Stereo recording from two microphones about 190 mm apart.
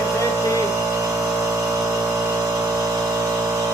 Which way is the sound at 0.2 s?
15° right (ahead or behind).